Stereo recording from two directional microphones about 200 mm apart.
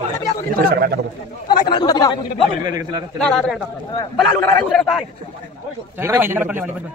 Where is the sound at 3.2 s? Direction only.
Centre (ahead or behind).